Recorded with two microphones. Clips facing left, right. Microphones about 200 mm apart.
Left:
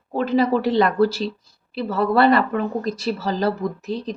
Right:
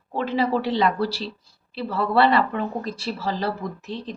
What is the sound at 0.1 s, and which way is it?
Speech, 45° left (ahead or behind).